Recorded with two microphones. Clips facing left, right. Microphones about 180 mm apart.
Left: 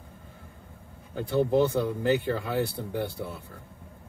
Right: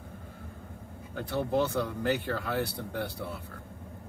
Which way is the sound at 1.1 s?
20° left (ahead or behind).